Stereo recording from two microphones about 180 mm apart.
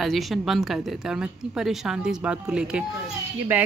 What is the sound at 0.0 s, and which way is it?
Speech, centre (ahead or behind).